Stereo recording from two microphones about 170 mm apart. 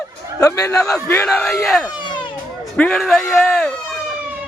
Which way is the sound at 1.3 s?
Centre (ahead or behind).